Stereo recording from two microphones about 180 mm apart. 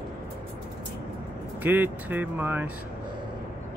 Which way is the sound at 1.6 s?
10° right (ahead or behind).